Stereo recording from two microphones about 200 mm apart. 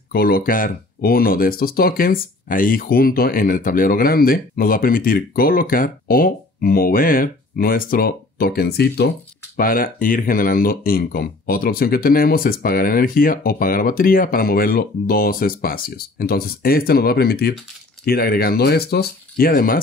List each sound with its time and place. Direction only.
0.1 s speech: 50° left (ahead or behind)